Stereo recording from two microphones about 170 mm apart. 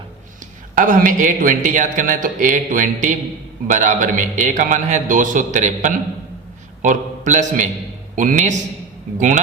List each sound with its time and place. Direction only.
0.8 s a man's voice: 50° right (ahead or behind)